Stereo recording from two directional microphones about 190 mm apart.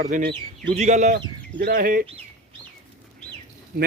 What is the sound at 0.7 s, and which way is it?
Speech, 40° right (ahead or behind).